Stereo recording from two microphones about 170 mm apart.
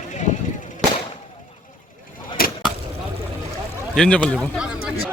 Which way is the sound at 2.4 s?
60° left (ahead or behind).